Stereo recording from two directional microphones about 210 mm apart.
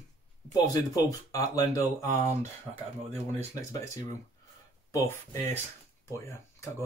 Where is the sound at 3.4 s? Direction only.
15° left (ahead or behind).